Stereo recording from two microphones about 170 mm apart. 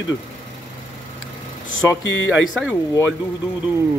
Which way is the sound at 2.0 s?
90° left.